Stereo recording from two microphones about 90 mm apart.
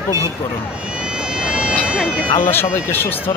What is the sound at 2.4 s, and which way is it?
Speech, 25° left (ahead or behind).